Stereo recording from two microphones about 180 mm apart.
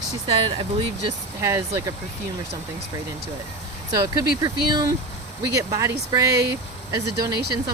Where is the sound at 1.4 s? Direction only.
15° right (ahead or behind).